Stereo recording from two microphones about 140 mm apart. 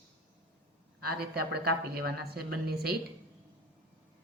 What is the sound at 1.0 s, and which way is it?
A woman's voice, 90° right.